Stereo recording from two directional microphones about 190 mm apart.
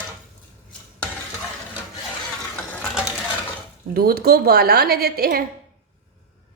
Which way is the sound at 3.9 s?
55° right (ahead or behind).